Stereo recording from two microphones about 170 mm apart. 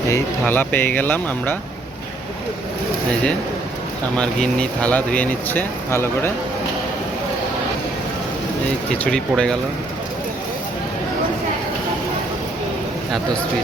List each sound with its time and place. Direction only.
0.1 s speech: 10° left (ahead or behind)
4.2 s speech: 5° left (ahead or behind)
9.0 s speech: 5° left (ahead or behind)